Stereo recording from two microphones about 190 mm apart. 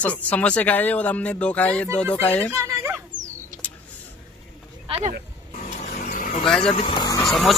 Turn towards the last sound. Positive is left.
turn(degrees=0)  # may be behind; listen again after turning